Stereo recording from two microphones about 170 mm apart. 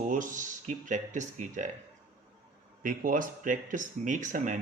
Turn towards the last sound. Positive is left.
turn(degrees=-50)  # may be behind; listen again after turning